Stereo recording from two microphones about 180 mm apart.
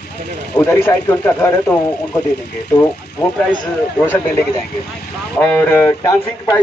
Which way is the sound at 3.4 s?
5° left (ahead or behind).